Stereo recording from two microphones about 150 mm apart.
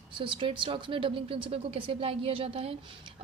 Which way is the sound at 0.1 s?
35° right (ahead or behind).